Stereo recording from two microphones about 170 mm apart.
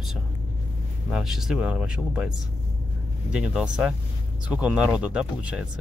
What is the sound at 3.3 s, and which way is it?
Speech, 5° right (ahead or behind).